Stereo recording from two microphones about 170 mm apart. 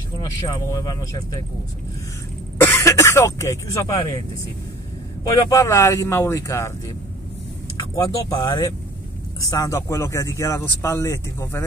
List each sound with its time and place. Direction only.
0.5 s speech: 20° left (ahead or behind)
2.6 s cough: 15° left (ahead or behind)
5.2 s speech: 20° left (ahead or behind)
7.9 s speech: 20° left (ahead or behind)